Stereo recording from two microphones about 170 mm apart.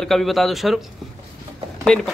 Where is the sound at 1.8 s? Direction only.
5° left (ahead or behind).